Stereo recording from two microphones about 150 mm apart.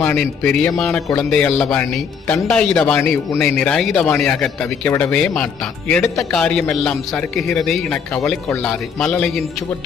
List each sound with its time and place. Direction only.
0.0 s speech: 5° left (ahead or behind)
8.4 s speech: 15° left (ahead or behind)
8.7 s speech: 5° left (ahead or behind)